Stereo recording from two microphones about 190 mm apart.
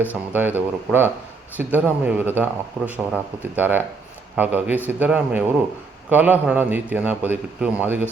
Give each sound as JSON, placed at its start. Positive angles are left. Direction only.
{"t": 0.3, "sound": "speech", "side_deg": -10}